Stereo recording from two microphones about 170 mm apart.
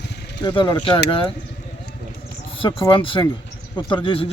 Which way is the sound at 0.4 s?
25° left (ahead or behind).